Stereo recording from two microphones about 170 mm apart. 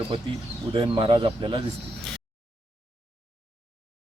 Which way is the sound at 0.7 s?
30° right (ahead or behind).